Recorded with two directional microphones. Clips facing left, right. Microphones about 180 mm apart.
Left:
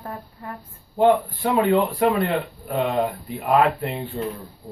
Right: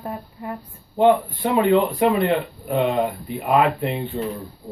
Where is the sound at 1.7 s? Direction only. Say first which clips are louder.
Right 4 dB; 5° right (ahead or behind).